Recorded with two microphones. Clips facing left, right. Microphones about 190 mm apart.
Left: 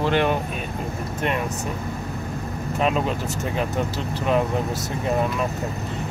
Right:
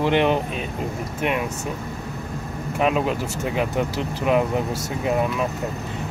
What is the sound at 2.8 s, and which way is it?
Speech, 10° right (ahead or behind).